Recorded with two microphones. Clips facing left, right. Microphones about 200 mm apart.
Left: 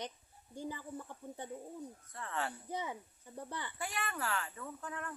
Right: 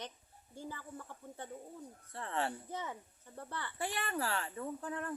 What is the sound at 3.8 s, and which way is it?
Speech, 30° right (ahead or behind).